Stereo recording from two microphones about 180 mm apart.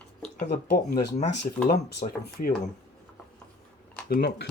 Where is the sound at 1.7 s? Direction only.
65° left (ahead or behind).